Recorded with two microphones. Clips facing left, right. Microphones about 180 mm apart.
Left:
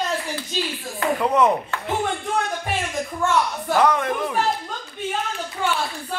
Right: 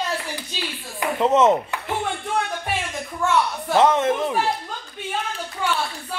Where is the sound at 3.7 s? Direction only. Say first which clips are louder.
Right 3 dB; 20° right (ahead or behind).